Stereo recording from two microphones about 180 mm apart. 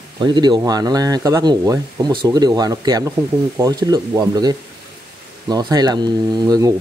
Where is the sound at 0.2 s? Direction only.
25° right (ahead or behind).